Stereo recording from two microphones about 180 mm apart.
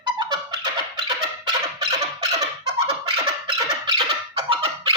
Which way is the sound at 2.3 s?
35° right (ahead or behind).